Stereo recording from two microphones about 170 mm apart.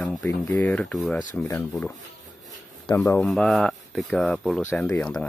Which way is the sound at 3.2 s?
Centre (ahead or behind).